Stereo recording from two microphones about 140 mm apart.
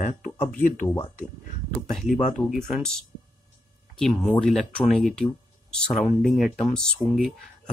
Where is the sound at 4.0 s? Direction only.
5° left (ahead or behind).